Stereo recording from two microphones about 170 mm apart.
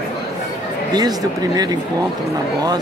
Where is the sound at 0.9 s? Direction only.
25° right (ahead or behind).